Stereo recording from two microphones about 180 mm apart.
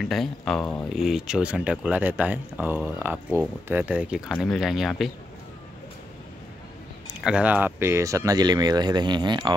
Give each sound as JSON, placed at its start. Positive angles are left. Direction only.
{"t": 0.0, "sound": "speech", "side_deg": 0}
{"t": 7.2, "sound": "speech", "side_deg": -5}